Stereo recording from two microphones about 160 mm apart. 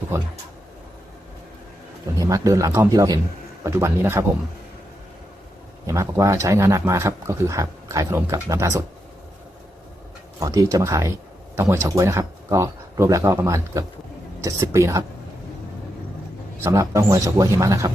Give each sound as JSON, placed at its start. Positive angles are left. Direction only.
{"t": 2.1, "sound": "speech", "side_deg": -20}
{"t": 5.8, "sound": "speech", "side_deg": -20}
{"t": 10.4, "sound": "speech", "side_deg": -20}
{"t": 16.6, "sound": "speech", "side_deg": -15}